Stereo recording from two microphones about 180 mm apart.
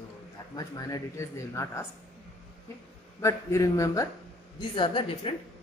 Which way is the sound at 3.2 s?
15° left (ahead or behind).